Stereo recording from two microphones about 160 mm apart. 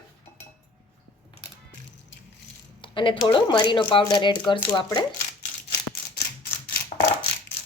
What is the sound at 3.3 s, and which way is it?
Speech, 30° left (ahead or behind).